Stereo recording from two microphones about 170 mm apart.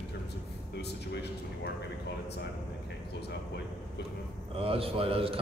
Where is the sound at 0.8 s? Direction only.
75° left (ahead or behind).